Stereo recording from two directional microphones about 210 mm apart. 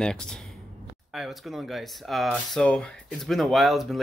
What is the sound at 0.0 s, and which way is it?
Speech, 5° left (ahead or behind).